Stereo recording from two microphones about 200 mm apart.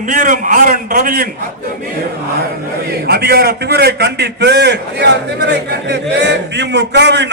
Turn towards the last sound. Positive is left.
turn(degrees=-60)  # may be behind; listen again after turning